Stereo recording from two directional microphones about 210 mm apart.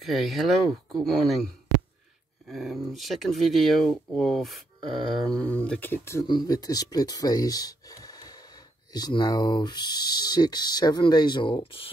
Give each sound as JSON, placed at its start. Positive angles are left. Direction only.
{"t": 0.0, "sound": "speech", "side_deg": 0}